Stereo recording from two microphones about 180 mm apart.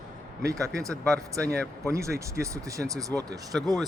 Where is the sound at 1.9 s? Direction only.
15° right (ahead or behind).